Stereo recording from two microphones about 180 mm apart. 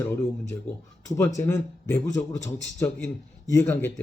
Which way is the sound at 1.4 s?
15° left (ahead or behind).